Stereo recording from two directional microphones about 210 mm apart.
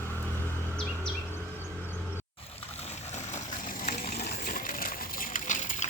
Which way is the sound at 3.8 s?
35° left (ahead or behind).